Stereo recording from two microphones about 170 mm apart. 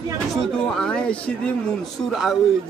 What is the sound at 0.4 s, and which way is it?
Speech, 5° left (ahead or behind).